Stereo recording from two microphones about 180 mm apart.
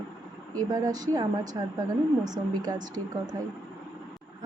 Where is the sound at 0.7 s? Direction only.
20° right (ahead or behind).